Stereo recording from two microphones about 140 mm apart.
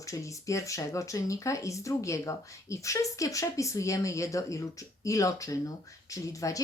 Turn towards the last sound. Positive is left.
turn(degrees=25)  # may be behind; listen again after turning